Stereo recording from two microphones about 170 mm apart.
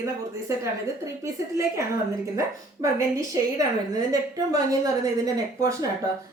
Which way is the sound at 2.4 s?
20° right (ahead or behind).